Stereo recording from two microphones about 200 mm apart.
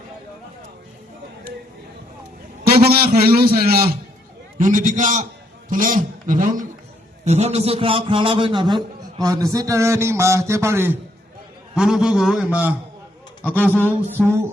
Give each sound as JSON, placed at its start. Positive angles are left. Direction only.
{"t": 2.6, "sound": "a man's voice", "side_deg": -50}
{"t": 13.4, "sound": "a man's voice", "side_deg": 10}